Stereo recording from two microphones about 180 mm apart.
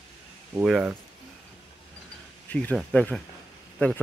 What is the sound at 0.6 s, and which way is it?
Speech, 5° right (ahead or behind).